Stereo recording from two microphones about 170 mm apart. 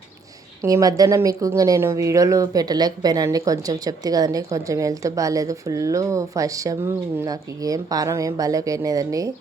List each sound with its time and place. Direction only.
0.6 s speech: 20° right (ahead or behind)